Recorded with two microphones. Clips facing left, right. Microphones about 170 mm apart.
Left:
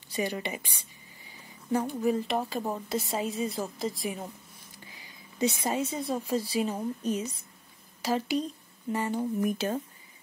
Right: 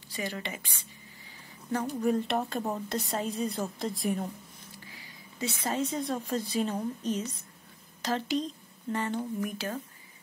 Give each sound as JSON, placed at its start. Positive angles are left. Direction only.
{"t": 0.1, "sound": "a woman's voice", "side_deg": 15}
{"t": 1.9, "sound": "a woman's voice", "side_deg": 0}
{"t": 5.4, "sound": "a woman's voice", "side_deg": 15}
{"t": 9.4, "sound": "speech", "side_deg": 20}